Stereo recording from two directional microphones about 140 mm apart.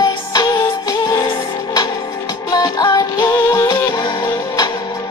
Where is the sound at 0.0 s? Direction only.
30° left (ahead or behind).